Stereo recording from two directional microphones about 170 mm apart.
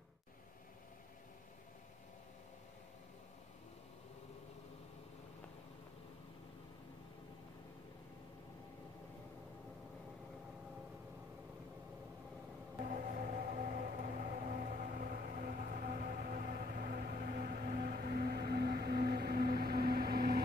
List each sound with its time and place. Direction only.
12.8 s vehicle: 50° right (ahead or behind)